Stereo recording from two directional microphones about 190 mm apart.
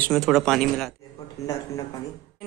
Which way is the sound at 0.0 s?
Centre (ahead or behind).